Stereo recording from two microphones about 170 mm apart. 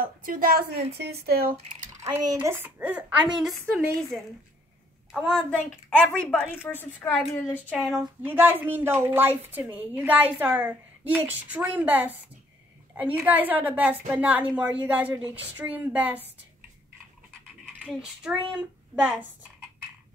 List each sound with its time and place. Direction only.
0.2 s speech: 55° right (ahead or behind)
2.0 s a woman's voice: 15° right (ahead or behind); by 7.7 s 10° left (ahead or behind)
7.7 s a woman's voice: 5° right (ahead or behind)
17.9 s speech: 5° right (ahead or behind)